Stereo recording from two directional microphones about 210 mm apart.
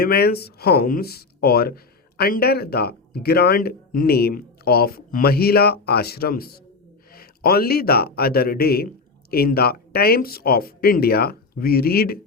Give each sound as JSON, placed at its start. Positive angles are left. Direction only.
{"t": 0.0, "sound": "a man's voice", "side_deg": 50}